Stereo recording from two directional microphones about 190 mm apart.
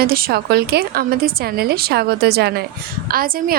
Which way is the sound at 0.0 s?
50° right (ahead or behind).